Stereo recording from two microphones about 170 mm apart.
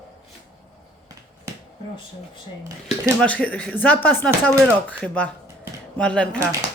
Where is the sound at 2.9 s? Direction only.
5° left (ahead or behind).